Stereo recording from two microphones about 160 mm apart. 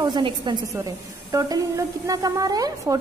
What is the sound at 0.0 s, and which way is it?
A woman's voice, 25° right (ahead or behind).